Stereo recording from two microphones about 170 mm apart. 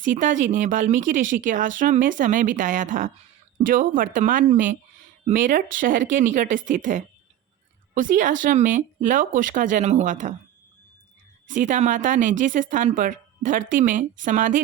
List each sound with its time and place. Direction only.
0.0 s speech: 50° right (ahead or behind)
11.4 s speech: 50° right (ahead or behind)